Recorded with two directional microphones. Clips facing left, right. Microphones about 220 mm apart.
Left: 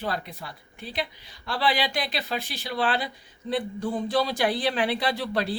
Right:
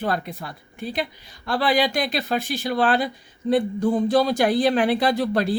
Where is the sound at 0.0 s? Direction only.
50° right (ahead or behind).